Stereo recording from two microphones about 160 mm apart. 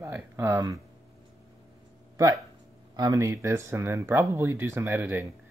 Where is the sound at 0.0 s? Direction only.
15° right (ahead or behind).